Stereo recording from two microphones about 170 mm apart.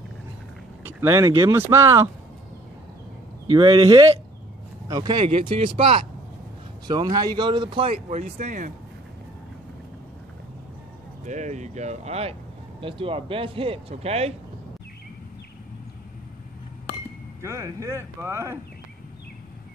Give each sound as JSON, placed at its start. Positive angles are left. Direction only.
{"t": 0.8, "sound": "speech", "side_deg": -15}
{"t": 3.5, "sound": "speech", "side_deg": -30}
{"t": 6.9, "sound": "speech", "side_deg": -25}
{"t": 11.2, "sound": "speech", "side_deg": -45}
{"t": 17.4, "sound": "speech", "side_deg": -15}